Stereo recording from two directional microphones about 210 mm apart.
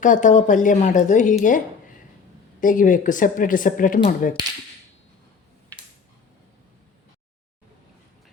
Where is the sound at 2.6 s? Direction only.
40° left (ahead or behind).